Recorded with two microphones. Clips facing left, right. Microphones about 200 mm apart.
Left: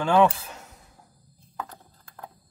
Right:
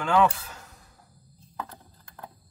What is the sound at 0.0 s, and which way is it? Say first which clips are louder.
Speech: left 3 dB; 25° left (ahead or behind).